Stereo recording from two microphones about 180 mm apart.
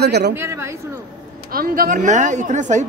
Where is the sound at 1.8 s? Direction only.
45° right (ahead or behind).